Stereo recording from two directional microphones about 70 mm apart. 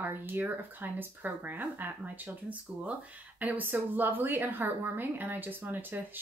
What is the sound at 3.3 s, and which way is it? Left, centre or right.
Speech, right.